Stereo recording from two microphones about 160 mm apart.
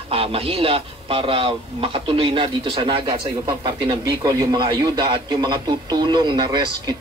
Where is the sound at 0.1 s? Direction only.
35° right (ahead or behind).